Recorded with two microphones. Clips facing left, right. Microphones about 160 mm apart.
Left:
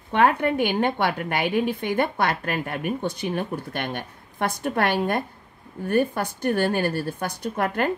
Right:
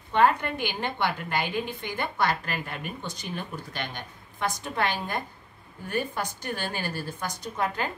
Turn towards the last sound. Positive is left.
turn(degrees=60)  # may be behind; listen again after turning